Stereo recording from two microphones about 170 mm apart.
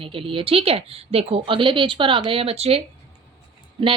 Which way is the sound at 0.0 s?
30° right (ahead or behind).